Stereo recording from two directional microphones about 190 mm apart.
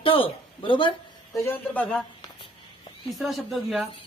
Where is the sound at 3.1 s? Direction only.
Centre (ahead or behind).